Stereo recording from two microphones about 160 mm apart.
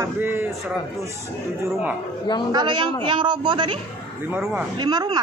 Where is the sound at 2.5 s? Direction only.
30° right (ahead or behind).